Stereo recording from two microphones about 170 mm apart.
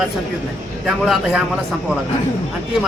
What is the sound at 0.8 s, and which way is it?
Speech, centre (ahead or behind).